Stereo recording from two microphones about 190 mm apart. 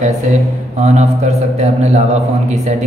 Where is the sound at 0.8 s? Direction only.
35° right (ahead or behind).